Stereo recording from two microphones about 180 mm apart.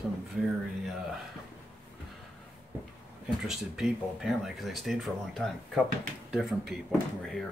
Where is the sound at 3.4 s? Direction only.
Centre (ahead or behind).